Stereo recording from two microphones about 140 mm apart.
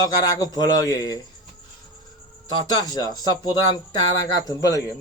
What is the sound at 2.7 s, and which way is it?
Speech, 30° left (ahead or behind).